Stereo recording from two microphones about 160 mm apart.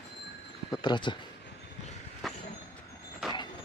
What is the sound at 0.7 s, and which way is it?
Speech, 30° left (ahead or behind).